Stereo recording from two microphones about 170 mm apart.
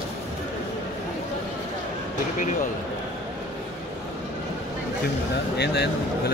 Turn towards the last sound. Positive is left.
turn(degrees=75)  # may be behind; listen again after turning